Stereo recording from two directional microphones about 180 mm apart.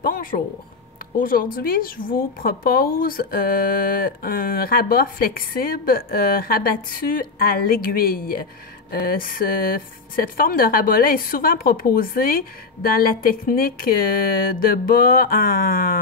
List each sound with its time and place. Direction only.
0.0 s a man's voice: 50° left (ahead or behind)